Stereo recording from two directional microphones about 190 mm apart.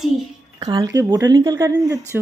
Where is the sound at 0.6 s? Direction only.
20° right (ahead or behind).